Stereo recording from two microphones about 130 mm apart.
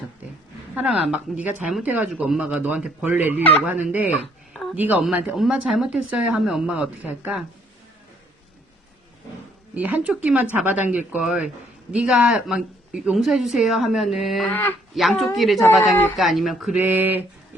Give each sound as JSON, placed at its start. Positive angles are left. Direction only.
{"t": 0.8, "sound": "speech", "side_deg": -10}
{"t": 4.5, "sound": "a sound", "side_deg": 0}
{"t": 4.8, "sound": "speech", "side_deg": -15}
{"t": 9.7, "sound": "speech", "side_deg": -10}
{"t": 14.5, "sound": "speech", "side_deg": 15}
{"t": 14.9, "sound": "speech", "side_deg": 0}
{"t": 16.8, "sound": "speech", "side_deg": -15}